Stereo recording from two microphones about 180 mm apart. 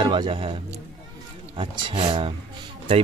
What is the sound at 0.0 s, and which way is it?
Speech, 30° right (ahead or behind).